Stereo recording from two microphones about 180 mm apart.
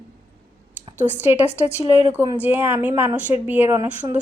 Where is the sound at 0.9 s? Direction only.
10° right (ahead or behind).